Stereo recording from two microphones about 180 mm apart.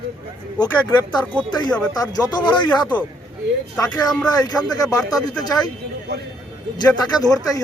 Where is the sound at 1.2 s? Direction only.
10° left (ahead or behind).